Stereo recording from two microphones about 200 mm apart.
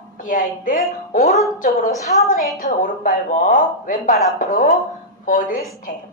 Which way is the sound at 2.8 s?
40° left (ahead or behind).